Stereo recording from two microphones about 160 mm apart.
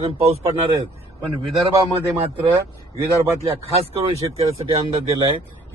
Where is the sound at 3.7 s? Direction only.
35° right (ahead or behind).